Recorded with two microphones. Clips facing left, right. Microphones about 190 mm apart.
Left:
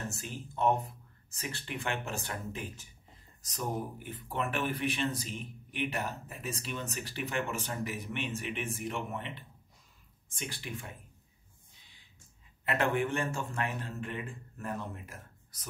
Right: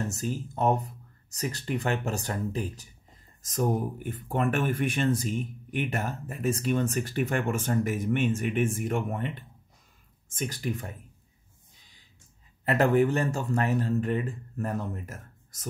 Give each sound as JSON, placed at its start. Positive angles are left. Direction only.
{"t": 0.1, "sound": "speech", "side_deg": -40}
{"t": 12.6, "sound": "speech", "side_deg": -40}